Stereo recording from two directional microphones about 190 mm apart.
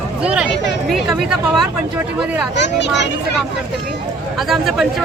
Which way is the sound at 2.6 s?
65° left (ahead or behind).